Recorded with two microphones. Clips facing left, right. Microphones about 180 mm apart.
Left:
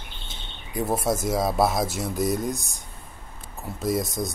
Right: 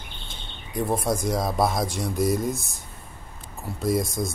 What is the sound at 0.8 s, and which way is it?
Speech, 5° left (ahead or behind).